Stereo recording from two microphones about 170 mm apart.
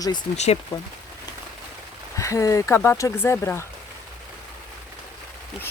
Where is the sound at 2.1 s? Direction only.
20° left (ahead or behind).